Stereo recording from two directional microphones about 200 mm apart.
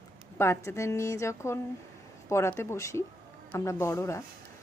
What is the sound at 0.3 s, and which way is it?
Speech, 10° left (ahead or behind).